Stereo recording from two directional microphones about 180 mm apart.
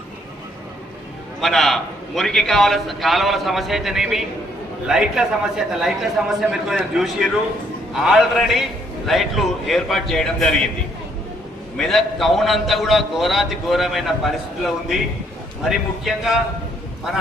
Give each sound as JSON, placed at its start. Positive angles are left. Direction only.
{"t": 1.4, "sound": "a man's voice", "side_deg": 0}
{"t": 11.8, "sound": "a man's voice", "side_deg": 0}